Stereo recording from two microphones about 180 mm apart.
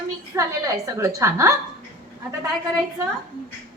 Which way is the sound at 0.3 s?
15° right (ahead or behind).